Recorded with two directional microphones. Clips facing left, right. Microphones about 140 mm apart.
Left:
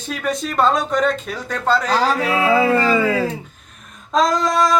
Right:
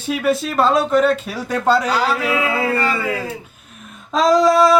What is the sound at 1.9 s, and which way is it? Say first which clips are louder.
Speech: left 1 dB; 30° left (ahead or behind).